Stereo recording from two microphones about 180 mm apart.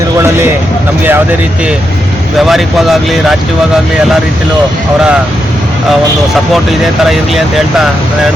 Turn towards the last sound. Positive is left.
turn(degrees=0)  # may be behind; listen again after turning